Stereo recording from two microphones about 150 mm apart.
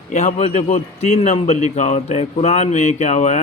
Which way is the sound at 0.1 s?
50° left (ahead or behind).